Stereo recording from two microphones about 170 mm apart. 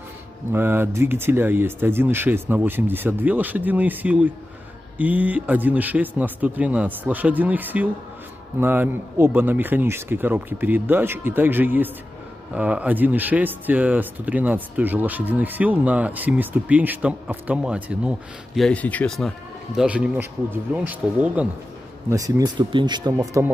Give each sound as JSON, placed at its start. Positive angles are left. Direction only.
{"t": 0.5, "sound": "speech", "side_deg": -15}
{"t": 22.1, "sound": "speech", "side_deg": -20}
{"t": 23.1, "sound": "speech", "side_deg": -15}